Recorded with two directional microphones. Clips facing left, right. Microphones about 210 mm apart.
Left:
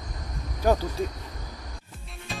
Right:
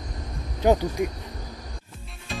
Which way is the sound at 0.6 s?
20° right (ahead or behind).